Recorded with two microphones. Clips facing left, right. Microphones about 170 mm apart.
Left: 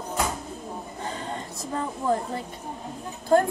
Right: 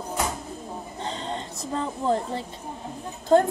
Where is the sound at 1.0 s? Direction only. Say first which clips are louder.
Right 2 dB; 25° right (ahead or behind).